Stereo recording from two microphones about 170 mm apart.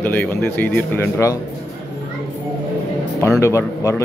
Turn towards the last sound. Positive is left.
turn(degrees=15)  # may be behind; listen again after turning